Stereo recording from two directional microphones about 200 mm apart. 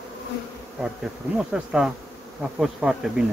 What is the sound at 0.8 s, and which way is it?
Bee, 5° right (ahead or behind).